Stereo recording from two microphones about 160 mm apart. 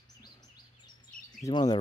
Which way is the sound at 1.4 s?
25° left (ahead or behind).